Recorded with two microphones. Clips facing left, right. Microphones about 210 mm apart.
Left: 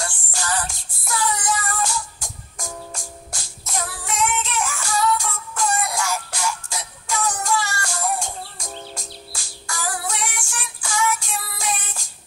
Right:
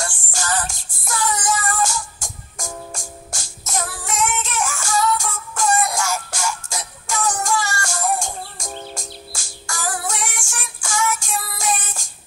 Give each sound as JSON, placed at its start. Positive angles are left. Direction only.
{"t": 0.3, "sound": "music", "side_deg": -45}